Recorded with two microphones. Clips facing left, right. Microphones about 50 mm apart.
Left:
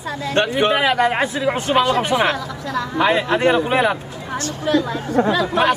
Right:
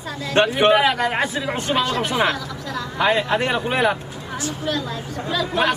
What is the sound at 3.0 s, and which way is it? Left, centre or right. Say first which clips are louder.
Speech: left 2 dB; centre.